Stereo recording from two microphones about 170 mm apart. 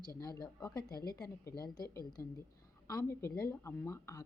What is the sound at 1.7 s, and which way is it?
A woman's voice, 20° left (ahead or behind).